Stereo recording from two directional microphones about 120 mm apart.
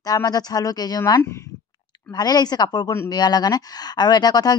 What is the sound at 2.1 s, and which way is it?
Speech, 35° left (ahead or behind).